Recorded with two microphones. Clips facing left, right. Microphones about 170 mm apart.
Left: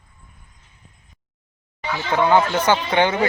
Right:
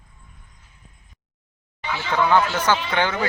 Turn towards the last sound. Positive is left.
turn(degrees=20)  # may be behind; listen again after turning